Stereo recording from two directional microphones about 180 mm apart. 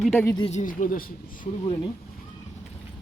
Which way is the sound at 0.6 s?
50° left (ahead or behind).